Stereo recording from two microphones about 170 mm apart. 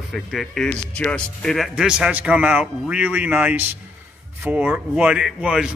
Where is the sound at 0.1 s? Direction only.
Centre (ahead or behind).